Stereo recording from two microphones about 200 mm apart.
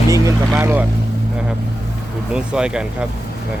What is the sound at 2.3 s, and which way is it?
Speech, 5° right (ahead or behind).